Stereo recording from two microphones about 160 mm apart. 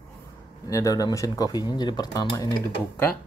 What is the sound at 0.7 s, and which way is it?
Speech, 20° left (ahead or behind).